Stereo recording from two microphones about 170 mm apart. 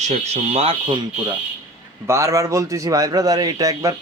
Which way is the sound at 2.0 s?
15° right (ahead or behind).